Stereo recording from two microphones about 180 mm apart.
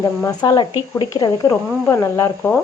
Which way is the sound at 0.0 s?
20° left (ahead or behind).